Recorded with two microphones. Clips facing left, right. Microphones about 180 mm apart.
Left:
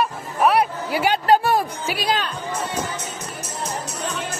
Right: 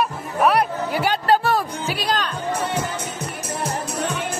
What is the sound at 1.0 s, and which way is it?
Music, 10° left (ahead or behind).